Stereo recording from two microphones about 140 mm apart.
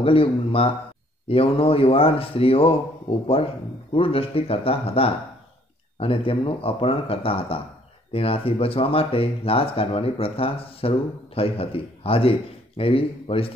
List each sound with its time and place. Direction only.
0.0 s speech: 40° left (ahead or behind)